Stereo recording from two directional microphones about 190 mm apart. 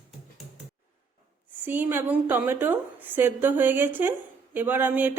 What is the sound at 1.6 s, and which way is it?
A woman's voice, 10° right (ahead or behind).